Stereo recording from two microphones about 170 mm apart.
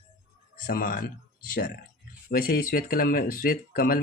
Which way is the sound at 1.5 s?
75° left (ahead or behind).